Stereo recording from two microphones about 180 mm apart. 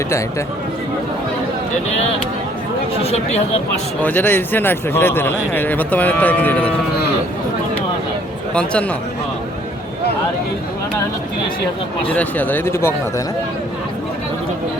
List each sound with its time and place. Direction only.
3.0 s speech: 35° left (ahead or behind)
4.0 s a man's voice: 10° left (ahead or behind)
8.5 s a man's voice: 5° left (ahead or behind)
12.0 s a man's voice: 10° left (ahead or behind)